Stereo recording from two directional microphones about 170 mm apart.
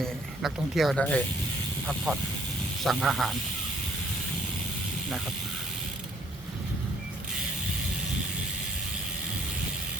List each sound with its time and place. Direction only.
0.0 s speech: centre (ahead or behind)
2.8 s speech: centre (ahead or behind)